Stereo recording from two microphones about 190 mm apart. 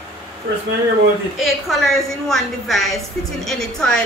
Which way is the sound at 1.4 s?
Centre (ahead or behind).